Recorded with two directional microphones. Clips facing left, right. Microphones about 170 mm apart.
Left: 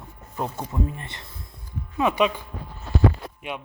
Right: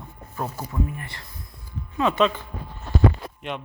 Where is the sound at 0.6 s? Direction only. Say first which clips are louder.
Even; 25° left (ahead or behind).